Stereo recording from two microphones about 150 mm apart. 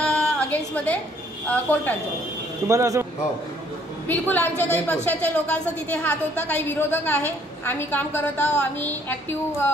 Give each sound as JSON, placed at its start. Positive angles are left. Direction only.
{"t": 0.0, "sound": "a sound", "side_deg": 10}
{"t": 1.5, "sound": "a woman's voice", "side_deg": 10}
{"t": 2.7, "sound": "a man's voice", "side_deg": -20}
{"t": 4.1, "sound": "a woman's voice", "side_deg": 10}